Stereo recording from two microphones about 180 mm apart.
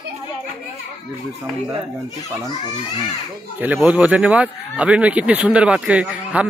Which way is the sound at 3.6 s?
10° right (ahead or behind).